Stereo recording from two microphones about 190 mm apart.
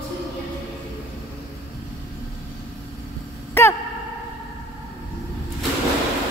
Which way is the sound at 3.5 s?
15° left (ahead or behind).